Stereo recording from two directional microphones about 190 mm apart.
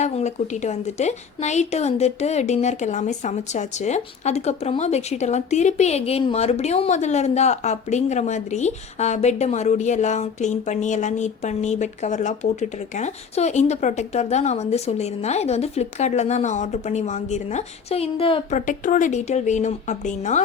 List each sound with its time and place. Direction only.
0.0 s a woman's voice: 35° left (ahead or behind)
18.5 s a woman's voice: 45° left (ahead or behind)